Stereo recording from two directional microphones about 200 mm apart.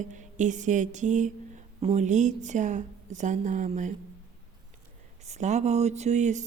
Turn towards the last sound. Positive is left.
turn(degrees=-35)  # may be behind; listen again after turning